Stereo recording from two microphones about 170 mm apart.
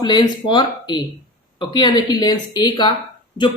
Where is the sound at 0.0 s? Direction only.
25° left (ahead or behind).